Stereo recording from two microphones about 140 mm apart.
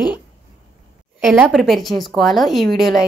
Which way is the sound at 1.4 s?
Centre (ahead or behind).